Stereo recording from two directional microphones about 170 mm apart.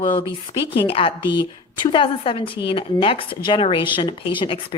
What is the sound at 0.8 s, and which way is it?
Speech, 35° left (ahead or behind).